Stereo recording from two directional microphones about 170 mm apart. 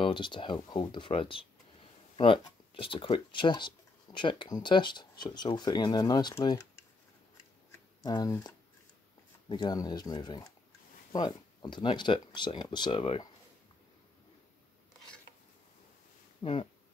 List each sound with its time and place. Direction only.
0.0 s speech: 30° left (ahead or behind)
8.0 s speech: 20° left (ahead or behind)
16.4 s speech: 25° left (ahead or behind)